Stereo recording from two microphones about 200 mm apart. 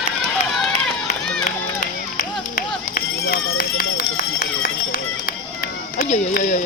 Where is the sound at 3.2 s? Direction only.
50° left (ahead or behind).